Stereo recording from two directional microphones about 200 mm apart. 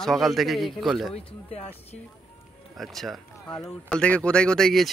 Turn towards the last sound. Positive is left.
turn(degrees=0)  # may be behind; listen again after turning